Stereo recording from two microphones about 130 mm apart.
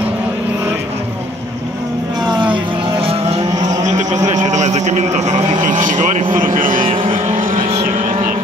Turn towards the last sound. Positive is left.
turn(degrees=-40)  # may be behind; listen again after turning